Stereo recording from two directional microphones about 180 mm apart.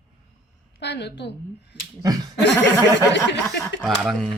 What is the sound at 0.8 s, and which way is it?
Speech, 70° left (ahead or behind).